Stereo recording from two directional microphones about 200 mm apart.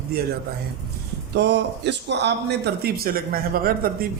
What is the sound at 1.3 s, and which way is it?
A man's voice, 60° right (ahead or behind).